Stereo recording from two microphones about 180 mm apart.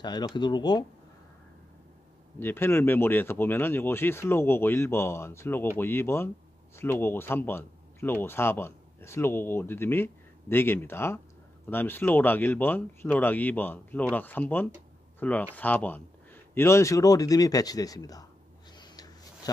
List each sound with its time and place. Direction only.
0.0 s speech: 25° left (ahead or behind)
2.4 s speech: 10° left (ahead or behind)
18.8 s a sound: 20° left (ahead or behind)